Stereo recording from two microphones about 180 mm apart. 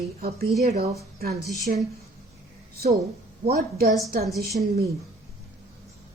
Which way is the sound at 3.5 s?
45° right (ahead or behind).